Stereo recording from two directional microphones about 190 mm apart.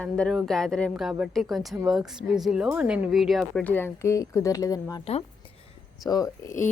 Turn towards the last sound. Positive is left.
turn(degrees=15)  # may be behind; listen again after turning